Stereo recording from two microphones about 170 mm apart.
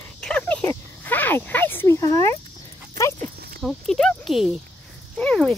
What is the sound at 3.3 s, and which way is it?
Insect, 65° right (ahead or behind).